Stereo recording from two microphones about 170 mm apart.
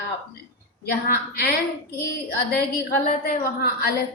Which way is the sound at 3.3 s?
65° left (ahead or behind).